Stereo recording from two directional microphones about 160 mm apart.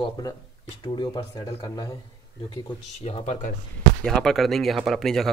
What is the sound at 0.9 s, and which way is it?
Speech, 25° left (ahead or behind).